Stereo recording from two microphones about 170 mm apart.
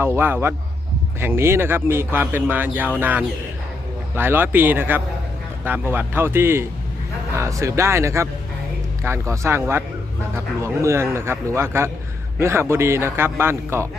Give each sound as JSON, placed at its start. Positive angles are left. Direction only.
{"t": 0.0, "sound": "speech", "side_deg": -15}